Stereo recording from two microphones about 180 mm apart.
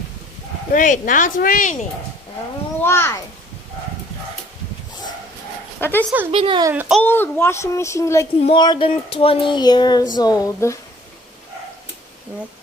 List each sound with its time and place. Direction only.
0.7 s speech: 45° left (ahead or behind)
2.8 s a child's voice: 15° left (ahead or behind)
5.8 s speech: 10° left (ahead or behind)
6.3 s a child's voice: 30° right (ahead or behind)
6.7 s a child's voice: 10° right (ahead or behind)
7.0 s a child's voice: 10° left (ahead or behind)
8.4 s speech: 30° left (ahead or behind)